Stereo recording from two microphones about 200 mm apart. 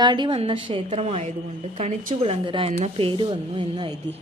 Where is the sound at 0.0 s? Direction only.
20° right (ahead or behind).